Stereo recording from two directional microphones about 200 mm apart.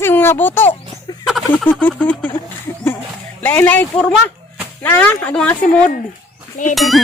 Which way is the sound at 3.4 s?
10° left (ahead or behind).